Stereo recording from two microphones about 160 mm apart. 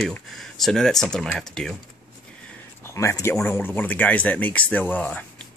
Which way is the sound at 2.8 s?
15° left (ahead or behind).